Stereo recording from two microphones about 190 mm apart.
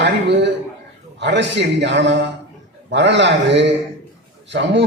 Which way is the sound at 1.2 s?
70° right (ahead or behind).